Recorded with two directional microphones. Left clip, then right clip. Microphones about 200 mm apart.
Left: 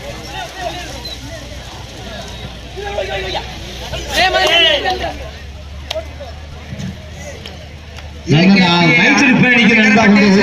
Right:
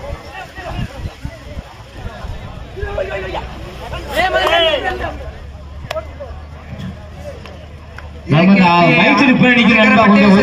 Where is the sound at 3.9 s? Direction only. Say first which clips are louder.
Left 2 dB; 20° right (ahead or behind).